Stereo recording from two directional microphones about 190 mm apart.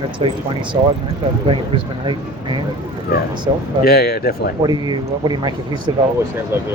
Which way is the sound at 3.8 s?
55° left (ahead or behind).